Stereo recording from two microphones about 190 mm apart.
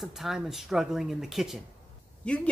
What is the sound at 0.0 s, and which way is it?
Speech, centre (ahead or behind).